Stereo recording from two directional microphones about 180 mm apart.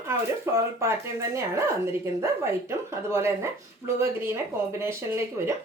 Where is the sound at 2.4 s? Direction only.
15° right (ahead or behind).